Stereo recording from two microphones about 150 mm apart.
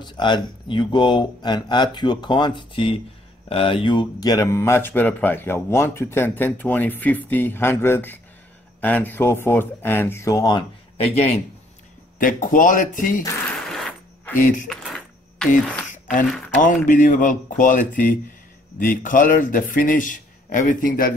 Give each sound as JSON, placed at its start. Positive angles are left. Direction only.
{"t": 0.0, "sound": "speech", "side_deg": 30}
{"t": 11.0, "sound": "a man's voice", "side_deg": 45}
{"t": 12.2, "sound": "a man's voice", "side_deg": 65}
{"t": 13.7, "sound": "mechanisms", "side_deg": 5}
{"t": 14.4, "sound": "a man's voice", "side_deg": 60}
{"t": 14.7, "sound": "a sound", "side_deg": 5}
{"t": 16.6, "sound": "a man's voice", "side_deg": 55}